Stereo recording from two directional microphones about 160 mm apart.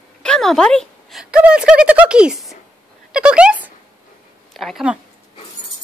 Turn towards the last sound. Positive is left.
turn(degrees=-5)  # may be behind; listen again after turning